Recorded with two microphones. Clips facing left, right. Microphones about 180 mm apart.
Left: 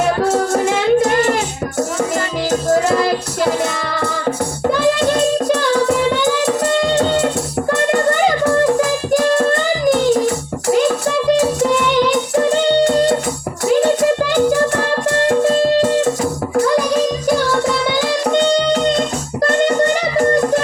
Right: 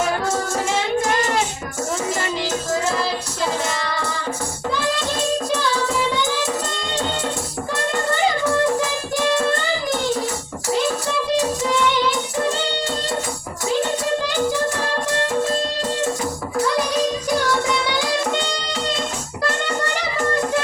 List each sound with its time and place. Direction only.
0.3 s child singing: 60° left (ahead or behind)
2.6 s music: 60° left (ahead or behind)
10.8 s music: 55° left (ahead or behind)
14.2 s music: 60° left (ahead or behind)